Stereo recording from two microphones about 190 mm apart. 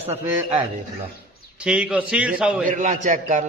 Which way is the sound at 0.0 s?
35° right (ahead or behind).